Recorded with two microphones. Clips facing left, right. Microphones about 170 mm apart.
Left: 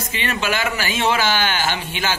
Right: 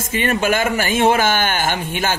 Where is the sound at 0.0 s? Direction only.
50° right (ahead or behind).